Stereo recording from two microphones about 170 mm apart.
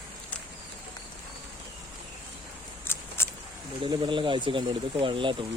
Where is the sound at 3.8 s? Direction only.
30° right (ahead or behind).